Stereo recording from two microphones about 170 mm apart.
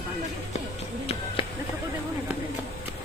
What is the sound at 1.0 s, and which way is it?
Speech, 35° left (ahead or behind).